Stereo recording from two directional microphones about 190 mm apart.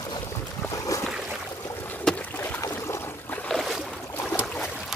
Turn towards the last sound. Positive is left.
turn(degrees=10)  # may be behind; listen again after turning